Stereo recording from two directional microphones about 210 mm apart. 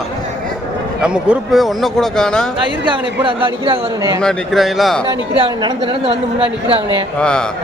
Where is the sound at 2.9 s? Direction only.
25° right (ahead or behind).